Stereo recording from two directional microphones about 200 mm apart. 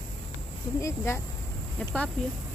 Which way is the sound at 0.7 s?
15° left (ahead or behind).